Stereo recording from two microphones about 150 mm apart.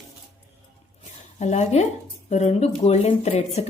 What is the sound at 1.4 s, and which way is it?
A woman's voice, 50° left (ahead or behind).